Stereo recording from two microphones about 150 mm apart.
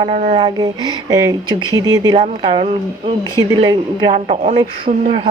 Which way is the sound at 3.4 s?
25° right (ahead or behind).